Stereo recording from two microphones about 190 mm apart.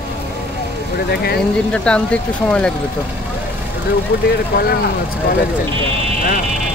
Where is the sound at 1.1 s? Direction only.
55° left (ahead or behind).